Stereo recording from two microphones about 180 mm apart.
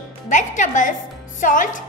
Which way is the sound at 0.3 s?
45° left (ahead or behind).